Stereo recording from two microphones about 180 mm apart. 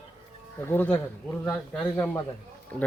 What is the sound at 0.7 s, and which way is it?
Speech, 10° left (ahead or behind).